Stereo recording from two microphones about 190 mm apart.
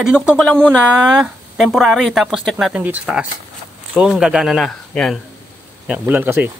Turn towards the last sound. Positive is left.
turn(degrees=-10)  # may be behind; listen again after turning